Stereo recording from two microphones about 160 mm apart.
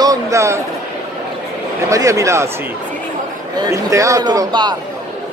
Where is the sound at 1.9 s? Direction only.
20° right (ahead or behind).